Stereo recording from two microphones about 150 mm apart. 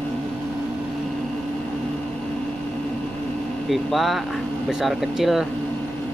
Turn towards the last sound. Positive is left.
turn(degrees=0)  # may be behind; listen again after turning